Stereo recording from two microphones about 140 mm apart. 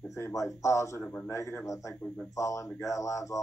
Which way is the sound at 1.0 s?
10° left (ahead or behind).